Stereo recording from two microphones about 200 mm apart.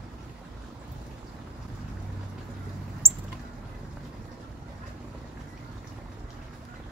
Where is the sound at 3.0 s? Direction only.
30° right (ahead or behind).